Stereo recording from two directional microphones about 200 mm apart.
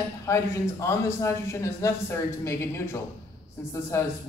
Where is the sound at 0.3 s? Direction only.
15° left (ahead or behind).